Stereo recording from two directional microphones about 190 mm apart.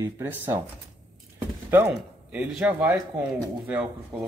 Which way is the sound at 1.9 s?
5° right (ahead or behind).